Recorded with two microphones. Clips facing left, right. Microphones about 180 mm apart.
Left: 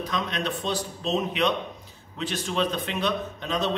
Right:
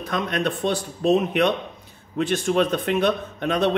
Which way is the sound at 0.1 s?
55° right (ahead or behind).